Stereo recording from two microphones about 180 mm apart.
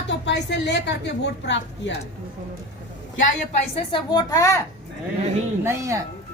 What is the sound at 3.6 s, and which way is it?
A woman's voice, 30° left (ahead or behind).